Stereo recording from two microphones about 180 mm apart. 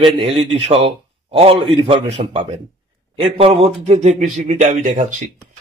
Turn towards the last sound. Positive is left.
turn(degrees=-45)  # may be behind; listen again after turning